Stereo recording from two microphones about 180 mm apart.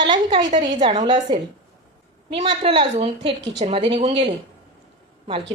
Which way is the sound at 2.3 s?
30° right (ahead or behind).